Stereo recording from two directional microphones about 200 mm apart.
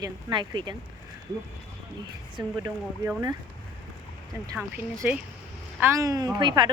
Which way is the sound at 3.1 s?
15° right (ahead or behind).